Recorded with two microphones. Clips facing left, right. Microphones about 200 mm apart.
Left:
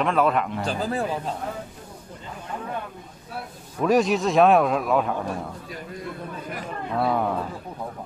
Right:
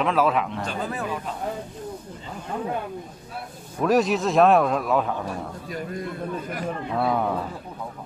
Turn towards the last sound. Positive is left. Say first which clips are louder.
# even
turn(degrees=0)  # may be behind; listen again after turning